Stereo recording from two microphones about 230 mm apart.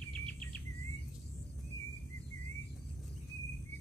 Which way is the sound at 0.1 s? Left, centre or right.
Centre.